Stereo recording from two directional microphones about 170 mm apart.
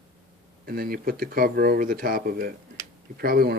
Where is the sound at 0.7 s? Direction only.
60° right (ahead or behind).